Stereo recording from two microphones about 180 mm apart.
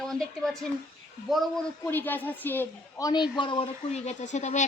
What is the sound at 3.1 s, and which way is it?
Speech, 25° left (ahead or behind).